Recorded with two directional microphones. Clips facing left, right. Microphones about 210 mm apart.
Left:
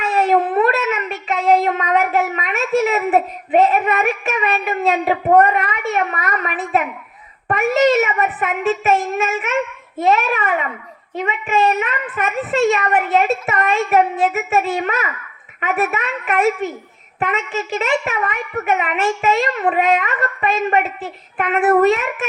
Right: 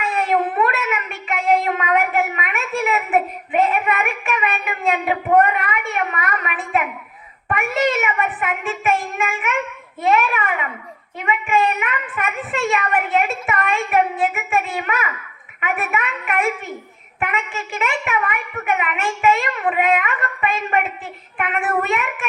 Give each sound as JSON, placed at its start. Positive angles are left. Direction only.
{"t": 0.0, "sound": "a sound", "side_deg": 35}
{"t": 7.4, "sound": "a woman's voice", "side_deg": 35}
{"t": 15.6, "sound": "a woman's voice", "side_deg": 35}